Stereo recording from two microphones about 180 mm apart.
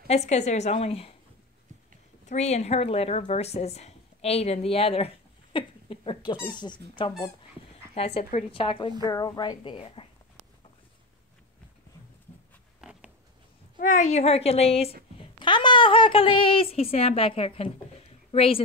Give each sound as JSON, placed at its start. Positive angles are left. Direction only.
{"t": 0.1, "sound": "a woman's voice", "side_deg": 40}
{"t": 2.2, "sound": "a woman's voice", "side_deg": 40}
{"t": 7.9, "sound": "a woman's voice", "side_deg": 35}
{"t": 13.7, "sound": "a woman's voice", "side_deg": 45}